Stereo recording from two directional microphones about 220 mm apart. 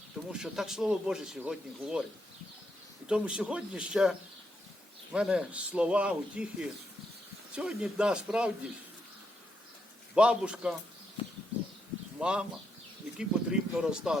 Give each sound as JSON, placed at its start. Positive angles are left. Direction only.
{"t": 0.3, "sound": "a man's voice", "side_deg": -5}
{"t": 3.1, "sound": "a man's voice", "side_deg": -5}
{"t": 5.1, "sound": "a man's voice", "side_deg": -5}
{"t": 10.2, "sound": "a man's voice", "side_deg": -5}
{"t": 11.2, "sound": "a sound", "side_deg": 20}
{"t": 12.2, "sound": "a man's voice", "side_deg": -5}